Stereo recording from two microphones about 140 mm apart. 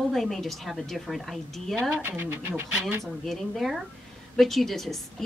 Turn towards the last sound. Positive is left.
turn(degrees=0)  # may be behind; listen again after turning